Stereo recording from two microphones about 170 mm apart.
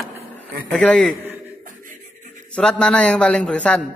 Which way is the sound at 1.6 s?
50° right (ahead or behind).